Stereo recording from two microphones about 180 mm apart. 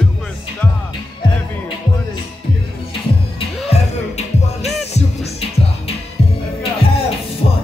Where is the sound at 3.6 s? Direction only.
35° left (ahead or behind).